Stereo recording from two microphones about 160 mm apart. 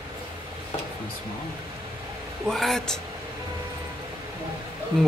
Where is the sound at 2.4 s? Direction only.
Centre (ahead or behind).